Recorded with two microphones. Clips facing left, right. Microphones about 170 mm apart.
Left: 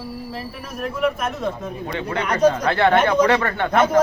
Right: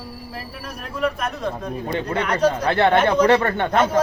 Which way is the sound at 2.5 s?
10° right (ahead or behind).